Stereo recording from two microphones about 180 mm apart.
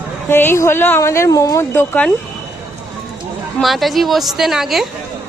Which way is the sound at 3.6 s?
Centre (ahead or behind).